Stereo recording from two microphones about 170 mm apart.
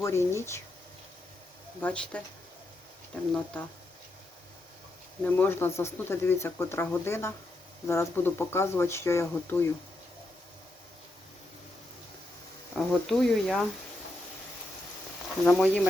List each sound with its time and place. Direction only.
0.0 s speech: 15° left (ahead or behind)
1.8 s speech: 5° left (ahead or behind)
3.3 s speech: 5° left (ahead or behind)
5.2 s speech: 10° left (ahead or behind)
12.7 s speech: centre (ahead or behind)
15.4 s speech: 5° left (ahead or behind)